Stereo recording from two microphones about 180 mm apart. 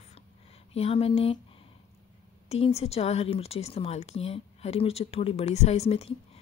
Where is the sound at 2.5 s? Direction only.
35° left (ahead or behind).